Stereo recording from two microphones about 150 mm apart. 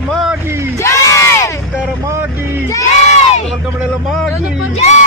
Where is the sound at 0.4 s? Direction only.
15° right (ahead or behind).